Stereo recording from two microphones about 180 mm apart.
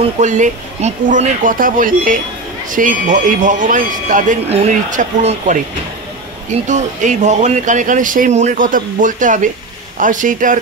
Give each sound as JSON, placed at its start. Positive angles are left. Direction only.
{"t": 0.0, "sound": "speech", "side_deg": -40}
{"t": 6.7, "sound": "speech", "side_deg": -40}